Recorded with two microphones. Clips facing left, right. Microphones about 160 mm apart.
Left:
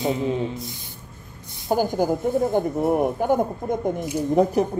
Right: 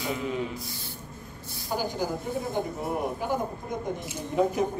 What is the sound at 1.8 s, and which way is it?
A woman's voice, 50° left (ahead or behind).